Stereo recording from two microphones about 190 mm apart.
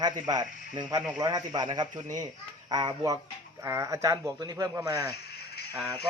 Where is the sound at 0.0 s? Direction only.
20° right (ahead or behind).